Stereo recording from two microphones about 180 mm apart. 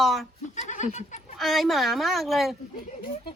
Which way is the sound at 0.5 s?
40° left (ahead or behind).